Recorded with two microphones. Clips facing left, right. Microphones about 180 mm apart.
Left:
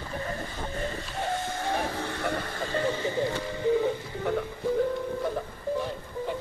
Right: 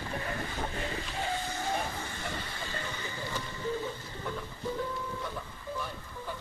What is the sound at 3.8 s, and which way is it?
Music, 65° left (ahead or behind).